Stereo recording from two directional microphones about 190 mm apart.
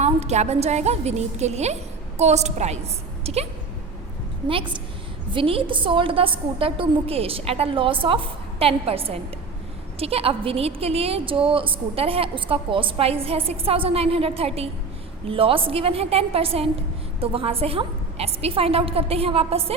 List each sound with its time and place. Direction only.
0.0 s a woman's voice: 35° right (ahead or behind)
5.3 s a woman's voice: 30° right (ahead or behind)